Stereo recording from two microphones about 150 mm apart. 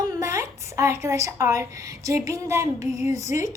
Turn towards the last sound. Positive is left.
turn(degrees=-20)  # may be behind; listen again after turning